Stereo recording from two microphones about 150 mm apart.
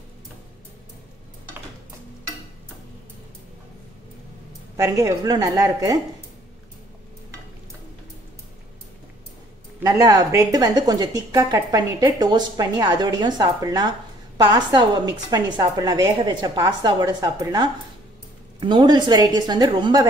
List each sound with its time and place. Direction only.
4.7 s a woman's voice: 20° right (ahead or behind)
9.8 s a woman's voice: 25° right (ahead or behind)